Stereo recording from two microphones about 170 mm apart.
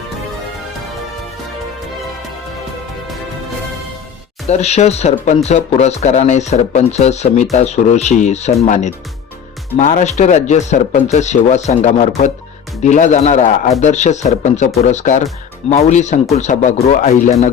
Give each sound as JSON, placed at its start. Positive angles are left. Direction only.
{"t": 4.4, "sound": "speech", "side_deg": 40}